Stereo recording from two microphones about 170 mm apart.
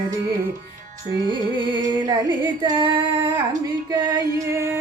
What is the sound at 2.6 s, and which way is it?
Female singing, 30° right (ahead or behind).